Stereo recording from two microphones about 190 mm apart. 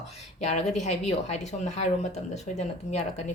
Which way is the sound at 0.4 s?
35° left (ahead or behind).